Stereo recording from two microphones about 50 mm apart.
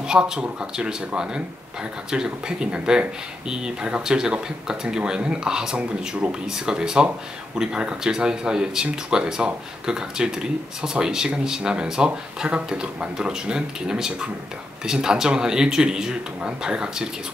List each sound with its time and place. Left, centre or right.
0.0 s speech: centre